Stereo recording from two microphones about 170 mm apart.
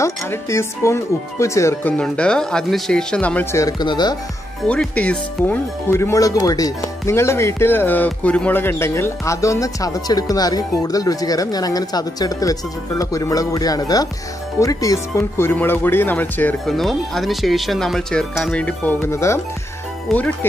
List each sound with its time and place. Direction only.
0.0 s speech: 15° left (ahead or behind)
3.6 s speech: 25° left (ahead or behind)
4.6 s speech: 5° left (ahead or behind)
20.1 s speech: centre (ahead or behind)